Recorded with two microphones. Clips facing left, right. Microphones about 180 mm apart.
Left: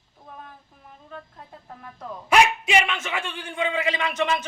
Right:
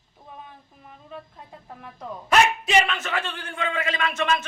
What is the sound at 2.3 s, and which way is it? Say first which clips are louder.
A man's voice: left 1 dB; 10° left (ahead or behind).